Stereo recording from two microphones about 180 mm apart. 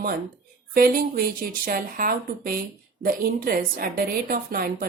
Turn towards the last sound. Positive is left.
turn(degrees=-55)  # may be behind; listen again after turning